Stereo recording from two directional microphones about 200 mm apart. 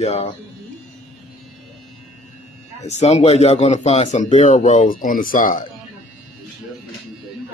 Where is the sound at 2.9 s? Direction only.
35° left (ahead or behind).